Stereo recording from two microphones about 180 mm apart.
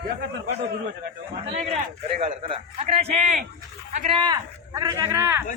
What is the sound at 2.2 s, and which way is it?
A man's voice, 30° right (ahead or behind).